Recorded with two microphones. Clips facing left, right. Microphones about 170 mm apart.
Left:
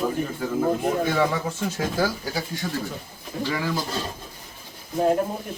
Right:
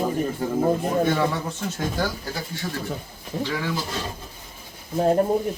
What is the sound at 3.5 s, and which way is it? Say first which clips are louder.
Speech: left 3 dB; centre (ahead or behind).